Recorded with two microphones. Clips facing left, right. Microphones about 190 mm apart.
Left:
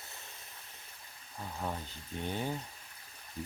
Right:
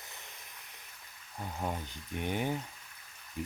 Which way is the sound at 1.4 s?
15° right (ahead or behind).